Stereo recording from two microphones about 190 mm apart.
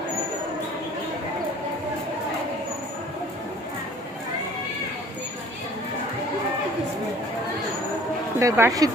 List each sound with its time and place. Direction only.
8.4 s speech: 15° right (ahead or behind)